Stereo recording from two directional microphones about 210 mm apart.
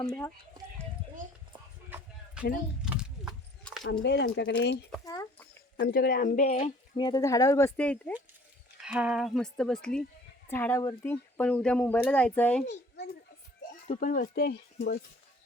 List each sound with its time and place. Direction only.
2.4 s speech: 5° right (ahead or behind)
2.8 s horse: 5° right (ahead or behind)
4.0 s speech: 55° left (ahead or behind)
5.0 s chicken: 15° left (ahead or behind)
5.8 s speech: 45° left (ahead or behind); by 8.1 s 5° left (ahead or behind)
8.8 s speech: 5° right (ahead or behind)
13.8 s speech: 40° left (ahead or behind)